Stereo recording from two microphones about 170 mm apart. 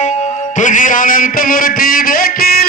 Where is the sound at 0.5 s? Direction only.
50° left (ahead or behind).